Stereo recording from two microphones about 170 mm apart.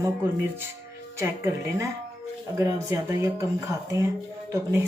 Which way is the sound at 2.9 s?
15° right (ahead or behind).